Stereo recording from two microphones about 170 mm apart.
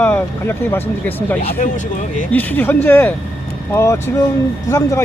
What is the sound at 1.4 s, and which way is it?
Speech, 40° left (ahead or behind).